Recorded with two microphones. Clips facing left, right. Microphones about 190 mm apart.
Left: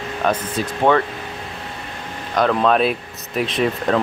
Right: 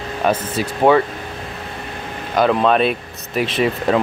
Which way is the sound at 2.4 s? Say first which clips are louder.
Right 1 dB; 5° right (ahead or behind).